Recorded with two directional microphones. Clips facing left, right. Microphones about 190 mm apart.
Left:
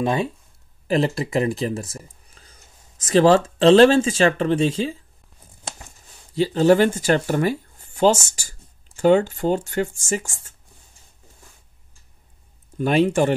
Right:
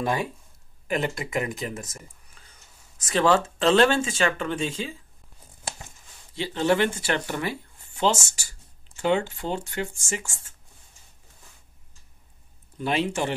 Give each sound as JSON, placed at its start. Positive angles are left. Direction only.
{"t": 0.0, "sound": "speech", "side_deg": 25}
{"t": 6.3, "sound": "speech", "side_deg": 40}
{"t": 12.7, "sound": "speech", "side_deg": 45}